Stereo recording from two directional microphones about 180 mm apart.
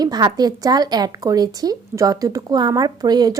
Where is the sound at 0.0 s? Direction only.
20° right (ahead or behind).